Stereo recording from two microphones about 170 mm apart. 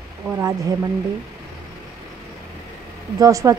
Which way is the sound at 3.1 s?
20° right (ahead or behind).